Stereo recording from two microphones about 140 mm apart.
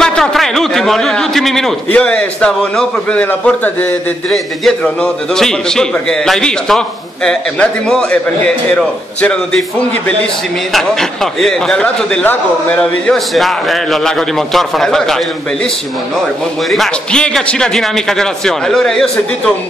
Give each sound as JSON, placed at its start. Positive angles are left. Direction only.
{"t": 0.0, "sound": "a man's voice", "side_deg": 5}
{"t": 10.7, "sound": "a man's voice", "side_deg": 5}
{"t": 16.7, "sound": "a man's voice", "side_deg": 5}